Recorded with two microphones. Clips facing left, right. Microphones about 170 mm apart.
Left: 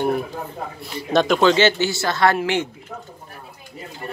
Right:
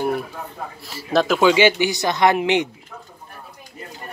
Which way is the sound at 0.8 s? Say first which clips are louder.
Left 1 dB; centre (ahead or behind).